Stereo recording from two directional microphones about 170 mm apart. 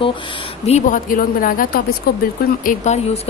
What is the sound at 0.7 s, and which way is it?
Speech, 45° left (ahead or behind).